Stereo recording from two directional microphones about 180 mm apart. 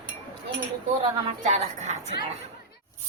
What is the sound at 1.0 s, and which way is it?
A woman's voice, 40° right (ahead or behind).